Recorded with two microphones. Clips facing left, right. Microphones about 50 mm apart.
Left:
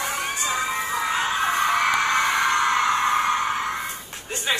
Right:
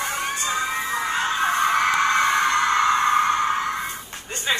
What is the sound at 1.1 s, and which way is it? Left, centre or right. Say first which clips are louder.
Music: right 1 dB; centre.